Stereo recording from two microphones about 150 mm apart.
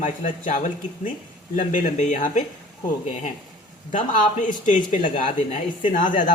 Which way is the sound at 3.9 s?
60° left (ahead or behind).